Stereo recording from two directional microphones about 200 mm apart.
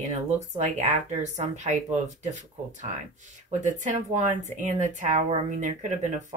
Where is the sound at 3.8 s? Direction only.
35° right (ahead or behind).